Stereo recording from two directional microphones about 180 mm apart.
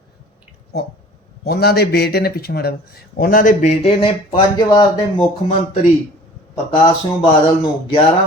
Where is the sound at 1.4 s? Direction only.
60° left (ahead or behind); by 4.8 s 25° left (ahead or behind).